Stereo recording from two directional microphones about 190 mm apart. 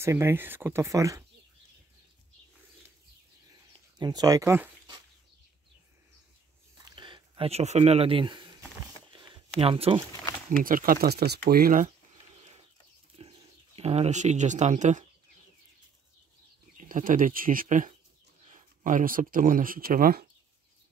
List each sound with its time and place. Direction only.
0.0 s speech: 15° right (ahead or behind)
4.0 s speech: 20° right (ahead or behind)
6.8 s a sound: 25° right (ahead or behind)
9.6 s speech: 30° right (ahead or behind)
10.6 s speech: 45° right (ahead or behind)
13.2 s a sound: 30° right (ahead or behind)
13.7 s speech: 35° right (ahead or behind)
16.7 s speech: 45° right (ahead or behind)